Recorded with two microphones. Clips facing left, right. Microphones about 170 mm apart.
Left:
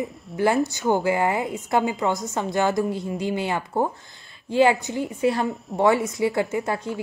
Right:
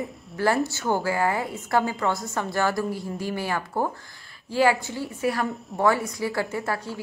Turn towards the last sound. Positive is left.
turn(degrees=20)  # may be behind; listen again after turning